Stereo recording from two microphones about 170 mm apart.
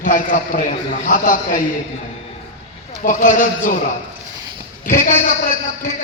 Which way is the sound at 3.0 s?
50° left (ahead or behind).